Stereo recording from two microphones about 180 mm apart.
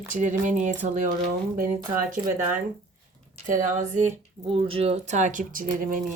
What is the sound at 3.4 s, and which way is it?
Speech, 45° right (ahead or behind).